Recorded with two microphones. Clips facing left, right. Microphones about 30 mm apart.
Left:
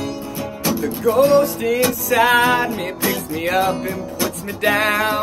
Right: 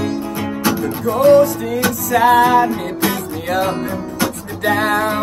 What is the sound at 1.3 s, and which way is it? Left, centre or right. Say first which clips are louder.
Music: right 3 dB; left.